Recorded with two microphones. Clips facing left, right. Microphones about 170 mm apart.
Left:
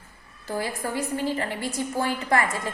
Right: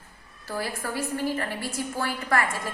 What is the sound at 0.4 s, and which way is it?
A woman's voice, 20° left (ahead or behind).